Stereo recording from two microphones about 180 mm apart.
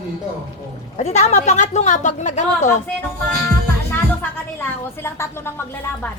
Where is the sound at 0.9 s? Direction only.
40° left (ahead or behind).